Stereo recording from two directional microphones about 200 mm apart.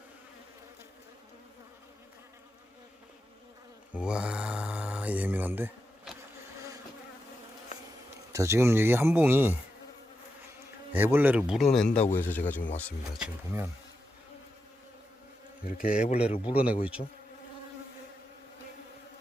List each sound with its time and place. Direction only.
3.9 s mantra: 5° right (ahead or behind)
8.3 s speech: 15° right (ahead or behind)
10.9 s speech: 10° right (ahead or behind)
11.9 s a man's voice: 35° left (ahead or behind)
12.1 s speech: 10° left (ahead or behind)
13.2 s speech: 10° right (ahead or behind)
16.0 s a man's voice: 35° left (ahead or behind)
16.5 s speech: 5° right (ahead or behind)
17.0 s a man's voice: 35° left (ahead or behind)